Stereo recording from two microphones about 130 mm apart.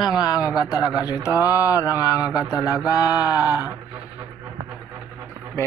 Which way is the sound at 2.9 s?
30° left (ahead or behind).